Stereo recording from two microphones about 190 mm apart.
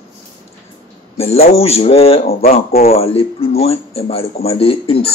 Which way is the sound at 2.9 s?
30° left (ahead or behind).